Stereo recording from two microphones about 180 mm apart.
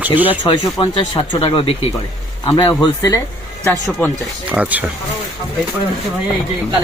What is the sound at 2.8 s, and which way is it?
Speech, 20° left (ahead or behind).